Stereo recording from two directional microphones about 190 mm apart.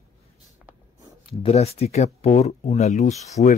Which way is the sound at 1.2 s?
30° left (ahead or behind).